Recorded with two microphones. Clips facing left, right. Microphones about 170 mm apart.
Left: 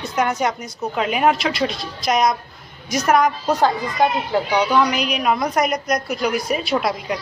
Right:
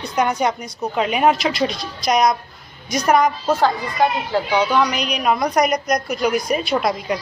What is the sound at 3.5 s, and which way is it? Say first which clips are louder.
A woman's voice: even; 15° left (ahead or behind).